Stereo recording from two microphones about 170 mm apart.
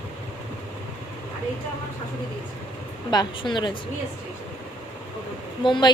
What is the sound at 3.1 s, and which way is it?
Speech, 25° left (ahead or behind).